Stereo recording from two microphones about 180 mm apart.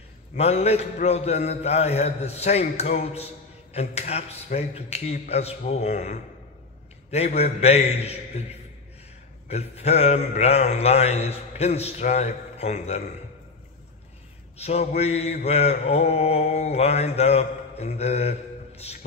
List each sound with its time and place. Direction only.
0.4 s mantra: 35° left (ahead or behind)
7.3 s mantra: 35° left (ahead or behind)
9.5 s mantra: 35° left (ahead or behind)
14.6 s mantra: 40° left (ahead or behind)